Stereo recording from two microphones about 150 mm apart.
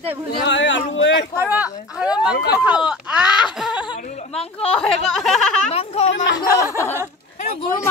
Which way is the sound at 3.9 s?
60° left (ahead or behind).